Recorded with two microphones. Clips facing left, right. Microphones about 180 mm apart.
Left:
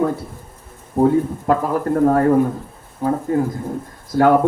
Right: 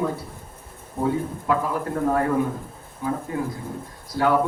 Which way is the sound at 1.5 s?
45° left (ahead or behind).